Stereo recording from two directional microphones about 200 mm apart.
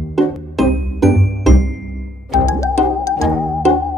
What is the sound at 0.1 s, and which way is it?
Music, centre (ahead or behind).